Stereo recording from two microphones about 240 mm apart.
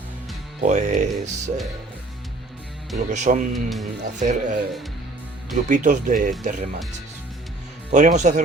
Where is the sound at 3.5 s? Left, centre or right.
Centre.